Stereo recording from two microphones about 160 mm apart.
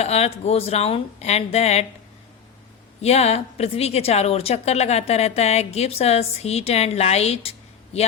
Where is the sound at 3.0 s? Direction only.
40° left (ahead or behind).